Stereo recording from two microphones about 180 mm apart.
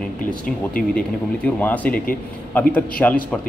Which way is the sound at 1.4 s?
10° left (ahead or behind).